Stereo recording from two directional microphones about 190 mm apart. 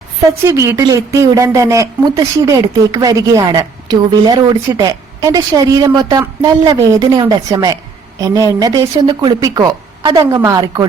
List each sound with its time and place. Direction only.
0.4 s a woman's voice: 15° right (ahead or behind)